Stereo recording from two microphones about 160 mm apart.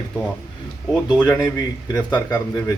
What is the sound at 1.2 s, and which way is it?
Speech, 15° left (ahead or behind).